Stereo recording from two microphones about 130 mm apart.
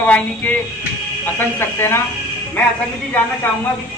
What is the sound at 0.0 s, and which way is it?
Speech, 15° left (ahead or behind).